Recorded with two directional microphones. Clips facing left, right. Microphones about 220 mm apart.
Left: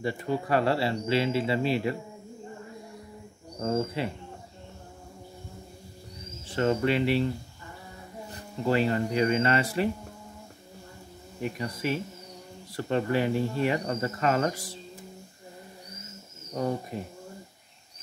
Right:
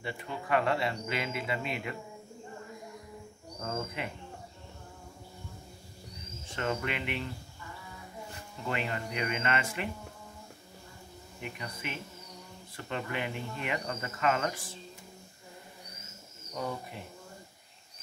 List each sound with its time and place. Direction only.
0.0 s speech: 40° left (ahead or behind)
3.5 s speech: 30° left (ahead or behind)
6.4 s speech: 35° left (ahead or behind)
8.3 s speech: 35° left (ahead or behind)
11.4 s speech: 35° left (ahead or behind)
16.5 s speech: 40° left (ahead or behind)